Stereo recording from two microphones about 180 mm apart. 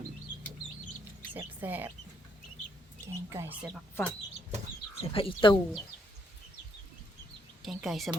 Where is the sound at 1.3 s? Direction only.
10° right (ahead or behind).